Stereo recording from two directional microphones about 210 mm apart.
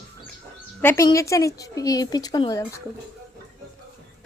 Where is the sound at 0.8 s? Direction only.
10° left (ahead or behind).